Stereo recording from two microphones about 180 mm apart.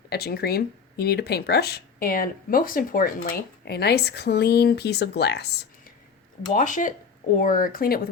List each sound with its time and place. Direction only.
0.1 s speech: 60° left (ahead or behind)
6.5 s speech: 45° left (ahead or behind)